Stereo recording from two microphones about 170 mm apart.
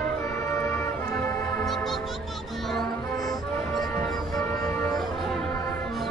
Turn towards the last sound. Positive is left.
turn(degrees=0)  # may be behind; listen again after turning